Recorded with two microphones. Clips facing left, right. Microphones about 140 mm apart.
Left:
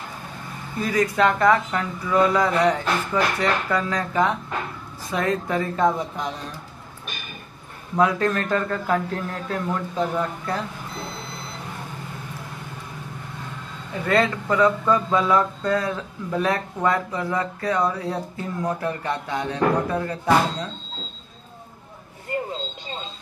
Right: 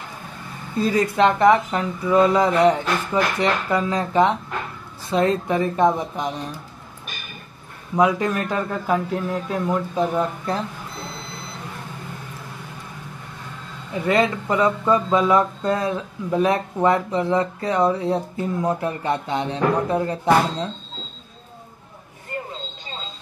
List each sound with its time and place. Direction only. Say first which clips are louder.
0.7 s speech: right 2 dB; 30° right (ahead or behind)
7.9 s a man's voice: right 1 dB; 15° right (ahead or behind)
14.0 s speech: right 1 dB; 15° right (ahead or behind)